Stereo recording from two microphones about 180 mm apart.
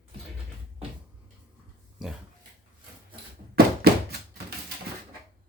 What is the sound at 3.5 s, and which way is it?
Thunk, 60° right (ahead or behind).